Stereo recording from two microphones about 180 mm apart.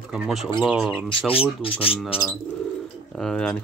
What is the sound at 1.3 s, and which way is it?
Speech, 30° left (ahead or behind).